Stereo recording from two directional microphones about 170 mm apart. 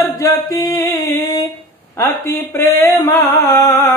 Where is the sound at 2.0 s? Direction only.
10° left (ahead or behind).